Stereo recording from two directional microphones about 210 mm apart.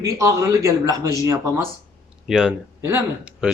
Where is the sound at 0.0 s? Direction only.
15° right (ahead or behind).